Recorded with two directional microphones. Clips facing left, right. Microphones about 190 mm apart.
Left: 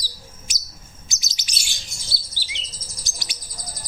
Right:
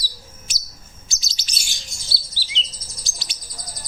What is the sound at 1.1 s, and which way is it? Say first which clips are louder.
Chirp: even; 20° left (ahead or behind).